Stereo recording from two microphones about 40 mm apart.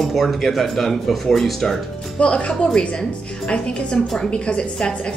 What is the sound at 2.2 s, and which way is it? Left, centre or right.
Speech, left.